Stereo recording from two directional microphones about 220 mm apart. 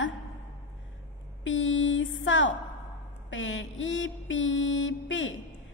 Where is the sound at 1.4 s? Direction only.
60° left (ahead or behind).